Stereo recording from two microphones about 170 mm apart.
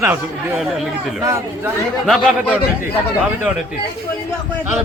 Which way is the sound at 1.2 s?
15° right (ahead or behind).